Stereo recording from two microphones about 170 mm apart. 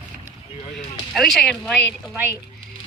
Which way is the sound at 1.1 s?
Centre (ahead or behind).